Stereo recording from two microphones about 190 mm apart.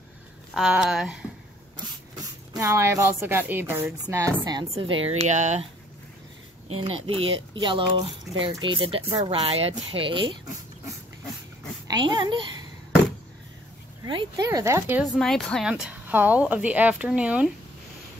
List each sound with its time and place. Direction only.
0.6 s speech: centre (ahead or behind)
2.5 s a woman's voice: 15° right (ahead or behind)
4.5 s speech: 25° right (ahead or behind)
6.8 s speech: 30° right (ahead or behind)
11.9 s a child's voice: 20° right (ahead or behind)
14.0 s a woman's voice: 20° right (ahead or behind)
15.1 s a woman's voice: centre (ahead or behind)